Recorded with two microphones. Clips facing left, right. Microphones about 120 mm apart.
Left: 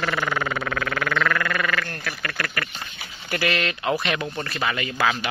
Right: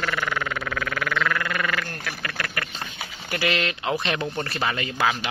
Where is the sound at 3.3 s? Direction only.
20° right (ahead or behind).